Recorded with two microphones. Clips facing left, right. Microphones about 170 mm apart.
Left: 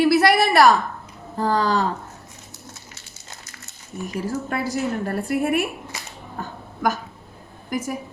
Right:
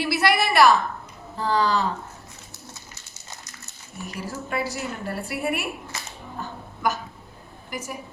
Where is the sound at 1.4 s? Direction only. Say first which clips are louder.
Left 2 dB; 45° left (ahead or behind).